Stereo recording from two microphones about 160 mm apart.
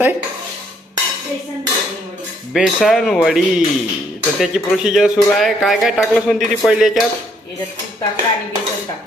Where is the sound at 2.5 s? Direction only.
Centre (ahead or behind).